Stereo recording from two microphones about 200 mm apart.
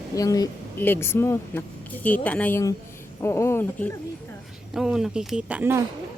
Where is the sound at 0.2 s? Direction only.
15° left (ahead or behind).